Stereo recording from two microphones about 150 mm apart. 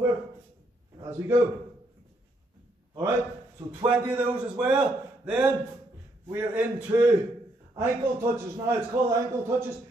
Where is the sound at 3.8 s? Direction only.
10° right (ahead or behind).